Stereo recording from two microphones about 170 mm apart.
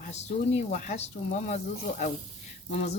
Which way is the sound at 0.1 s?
40° left (ahead or behind).